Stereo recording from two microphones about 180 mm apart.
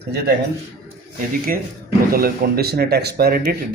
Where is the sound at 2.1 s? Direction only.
55° right (ahead or behind).